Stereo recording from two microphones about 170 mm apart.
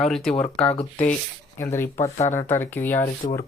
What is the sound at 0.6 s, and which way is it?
Speech, 35° left (ahead or behind).